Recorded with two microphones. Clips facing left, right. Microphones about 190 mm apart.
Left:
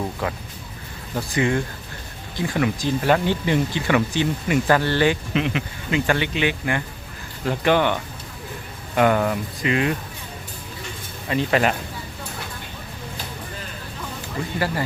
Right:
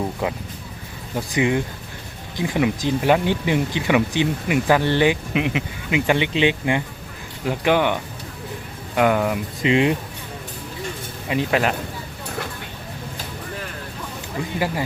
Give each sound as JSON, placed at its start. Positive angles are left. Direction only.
{"t": 1.1, "sound": "speech", "side_deg": -15}
{"t": 7.4, "sound": "speech", "side_deg": -10}
{"t": 9.0, "sound": "speech", "side_deg": -5}
{"t": 9.6, "sound": "speech", "side_deg": -25}
{"t": 11.3, "sound": "speech", "side_deg": -5}